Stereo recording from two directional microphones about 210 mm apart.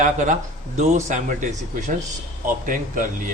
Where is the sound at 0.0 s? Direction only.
35° right (ahead or behind).